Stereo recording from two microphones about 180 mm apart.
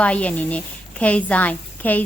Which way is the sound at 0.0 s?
5° left (ahead or behind).